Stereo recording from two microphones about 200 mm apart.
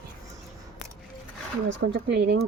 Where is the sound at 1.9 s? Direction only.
55° right (ahead or behind).